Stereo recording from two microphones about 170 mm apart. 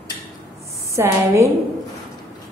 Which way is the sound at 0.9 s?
15° right (ahead or behind).